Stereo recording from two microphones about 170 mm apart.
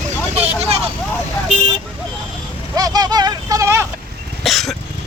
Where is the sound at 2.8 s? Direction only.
20° right (ahead or behind).